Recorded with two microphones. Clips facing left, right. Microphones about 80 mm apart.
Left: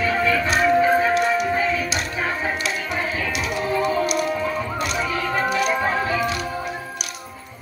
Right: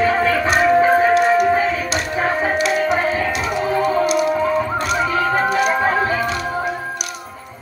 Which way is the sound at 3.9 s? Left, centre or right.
Right.